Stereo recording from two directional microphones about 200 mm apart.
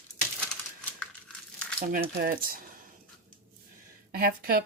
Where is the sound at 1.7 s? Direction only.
50° right (ahead or behind).